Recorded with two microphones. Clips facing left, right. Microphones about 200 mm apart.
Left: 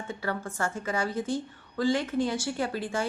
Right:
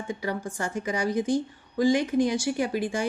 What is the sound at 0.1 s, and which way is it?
Speech, 15° right (ahead or behind).